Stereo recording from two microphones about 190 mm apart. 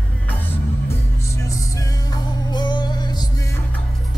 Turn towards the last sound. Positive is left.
turn(degrees=20)  # may be behind; listen again after turning